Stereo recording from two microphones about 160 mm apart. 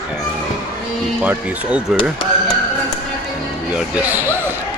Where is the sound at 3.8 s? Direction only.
10° right (ahead or behind).